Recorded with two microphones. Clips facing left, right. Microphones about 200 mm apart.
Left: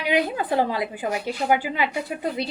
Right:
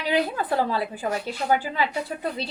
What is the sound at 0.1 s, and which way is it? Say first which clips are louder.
A woman's voice: left 1 dB; 15° left (ahead or behind).